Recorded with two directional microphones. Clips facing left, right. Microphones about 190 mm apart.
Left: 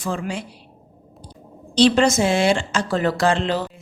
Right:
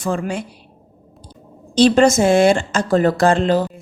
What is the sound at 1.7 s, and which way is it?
A woman's voice, 45° right (ahead or behind).